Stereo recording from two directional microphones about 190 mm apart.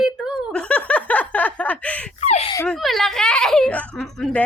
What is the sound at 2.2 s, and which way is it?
Speech, 35° left (ahead or behind).